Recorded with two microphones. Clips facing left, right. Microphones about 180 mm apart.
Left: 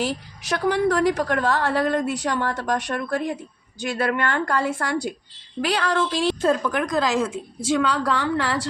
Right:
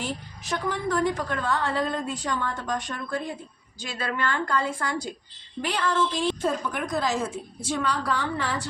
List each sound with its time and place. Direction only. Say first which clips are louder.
0.0 s a woman's voice: left 6 dB; 85° left
5.6 s a woman's voice: left 3 dB; 90° left